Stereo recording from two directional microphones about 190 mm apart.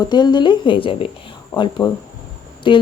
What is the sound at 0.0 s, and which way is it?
Speech, 25° left (ahead or behind).